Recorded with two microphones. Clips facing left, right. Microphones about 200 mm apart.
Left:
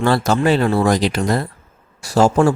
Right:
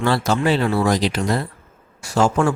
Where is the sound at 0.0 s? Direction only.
45° left (ahead or behind).